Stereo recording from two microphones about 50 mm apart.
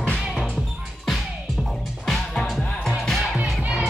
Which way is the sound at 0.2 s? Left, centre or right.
Centre.